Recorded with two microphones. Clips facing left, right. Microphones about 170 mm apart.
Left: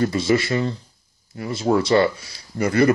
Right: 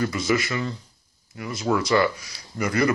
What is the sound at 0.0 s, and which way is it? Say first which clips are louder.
Speech: left 4 dB; 30° left (ahead or behind).